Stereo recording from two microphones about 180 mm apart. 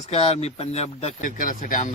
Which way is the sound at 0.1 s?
35° left (ahead or behind).